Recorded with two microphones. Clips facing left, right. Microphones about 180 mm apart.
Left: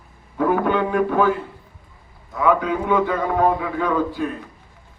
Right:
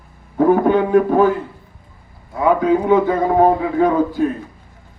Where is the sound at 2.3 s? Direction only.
40° right (ahead or behind).